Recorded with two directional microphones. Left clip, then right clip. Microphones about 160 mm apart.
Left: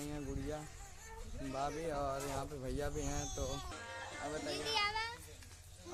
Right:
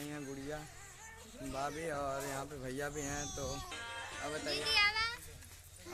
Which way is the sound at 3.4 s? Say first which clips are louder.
Right 1 dB; 25° left (ahead or behind).